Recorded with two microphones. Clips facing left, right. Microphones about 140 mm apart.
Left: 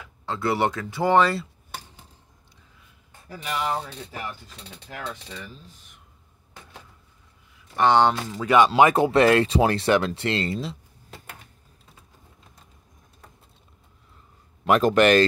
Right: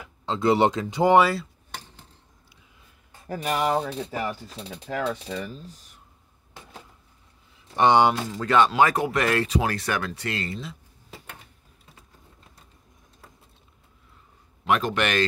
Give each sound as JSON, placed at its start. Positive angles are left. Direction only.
{"t": 0.2, "sound": "speech", "side_deg": -20}
{"t": 1.2, "sound": "speech", "side_deg": 0}
{"t": 3.3, "sound": "speech", "side_deg": -50}
{"t": 4.2, "sound": "speech", "side_deg": -40}
{"t": 7.6, "sound": "speech", "side_deg": -20}
{"t": 8.3, "sound": "speech", "side_deg": 10}
{"t": 14.7, "sound": "a man's voice", "side_deg": 40}